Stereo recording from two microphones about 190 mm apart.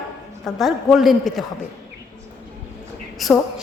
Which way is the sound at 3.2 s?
Centre (ahead or behind).